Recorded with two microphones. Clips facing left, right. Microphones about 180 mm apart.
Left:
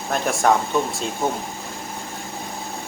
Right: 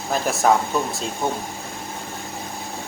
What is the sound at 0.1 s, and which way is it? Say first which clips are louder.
Speech: even; centre (ahead or behind).